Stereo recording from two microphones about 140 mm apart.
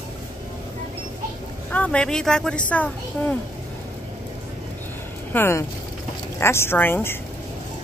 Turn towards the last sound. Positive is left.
turn(degrees=15)  # may be behind; listen again after turning